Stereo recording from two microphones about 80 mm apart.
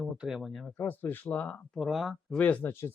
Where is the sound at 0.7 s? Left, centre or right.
Left.